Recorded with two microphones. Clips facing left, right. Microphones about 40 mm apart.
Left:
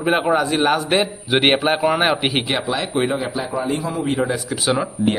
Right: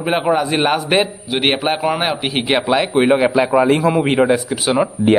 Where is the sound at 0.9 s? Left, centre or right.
Right.